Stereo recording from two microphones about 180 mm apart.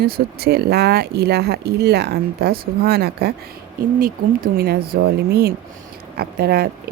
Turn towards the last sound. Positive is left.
turn(degrees=-60)  # may be behind; listen again after turning